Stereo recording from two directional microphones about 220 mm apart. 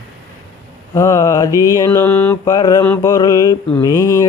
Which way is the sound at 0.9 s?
15° left (ahead or behind).